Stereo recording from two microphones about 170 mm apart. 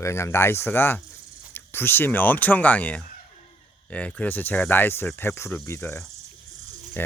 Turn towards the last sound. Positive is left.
turn(degrees=15)  # may be behind; listen again after turning